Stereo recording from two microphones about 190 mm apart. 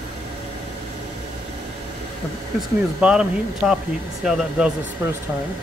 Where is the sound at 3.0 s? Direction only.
5° right (ahead or behind).